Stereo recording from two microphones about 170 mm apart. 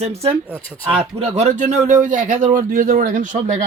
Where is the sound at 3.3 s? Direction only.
45° right (ahead or behind).